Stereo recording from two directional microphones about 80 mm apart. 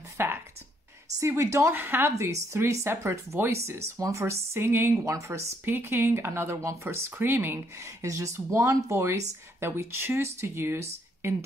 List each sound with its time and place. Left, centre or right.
0.2 s speech: right
1.8 s speech: right